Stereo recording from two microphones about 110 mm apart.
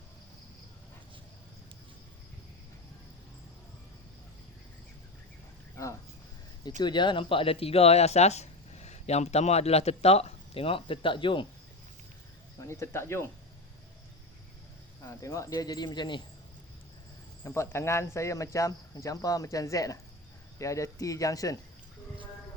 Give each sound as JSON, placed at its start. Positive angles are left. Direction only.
{"t": 6.8, "sound": "speech", "side_deg": 45}
{"t": 12.5, "sound": "speech", "side_deg": 25}
{"t": 15.0, "sound": "speech", "side_deg": 30}
{"t": 17.4, "sound": "speech", "side_deg": 25}